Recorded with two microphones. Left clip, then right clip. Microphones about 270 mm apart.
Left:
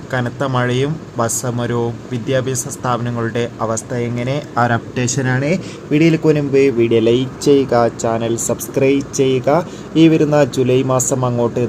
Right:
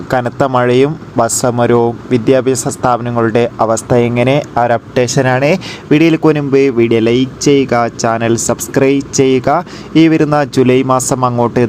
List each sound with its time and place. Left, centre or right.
0.1 s speech: right